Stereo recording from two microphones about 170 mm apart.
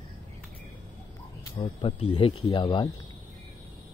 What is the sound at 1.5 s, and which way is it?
Speech, 30° left (ahead or behind).